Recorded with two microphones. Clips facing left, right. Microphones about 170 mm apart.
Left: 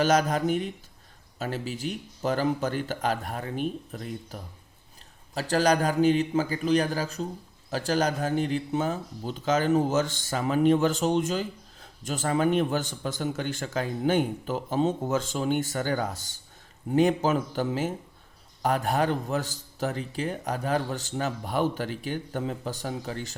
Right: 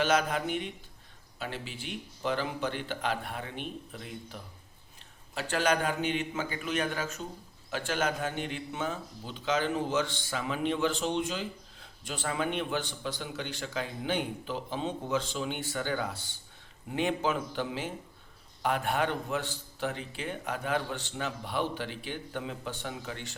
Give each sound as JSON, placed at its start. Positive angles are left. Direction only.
{"t": 0.0, "sound": "a man's voice", "side_deg": 40}